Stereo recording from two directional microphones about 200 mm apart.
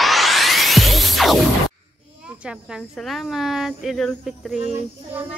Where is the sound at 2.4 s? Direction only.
Centre (ahead or behind).